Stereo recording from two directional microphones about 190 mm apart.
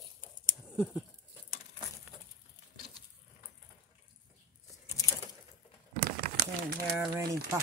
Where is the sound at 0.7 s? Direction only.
5° right (ahead or behind).